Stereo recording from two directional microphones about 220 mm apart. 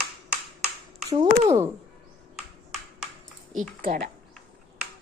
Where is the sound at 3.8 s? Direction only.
40° right (ahead or behind).